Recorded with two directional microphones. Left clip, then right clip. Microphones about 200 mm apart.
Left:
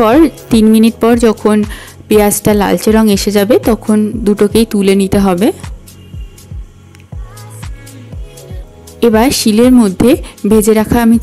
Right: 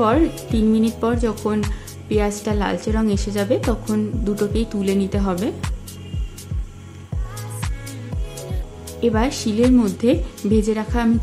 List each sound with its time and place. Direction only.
0.0 s speech: 45° left (ahead or behind)
9.0 s speech: 45° left (ahead or behind)